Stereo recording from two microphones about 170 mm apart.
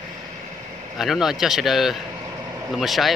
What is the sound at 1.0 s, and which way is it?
Speech, centre (ahead or behind).